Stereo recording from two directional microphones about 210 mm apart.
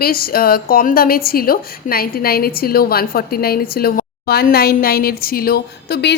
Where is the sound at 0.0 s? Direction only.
45° left (ahead or behind).